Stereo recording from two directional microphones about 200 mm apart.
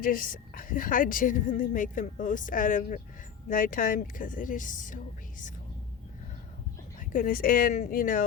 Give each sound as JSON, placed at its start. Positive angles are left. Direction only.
{"t": 0.0, "sound": "a woman's voice", "side_deg": 45}
{"t": 7.0, "sound": "a woman's voice", "side_deg": 40}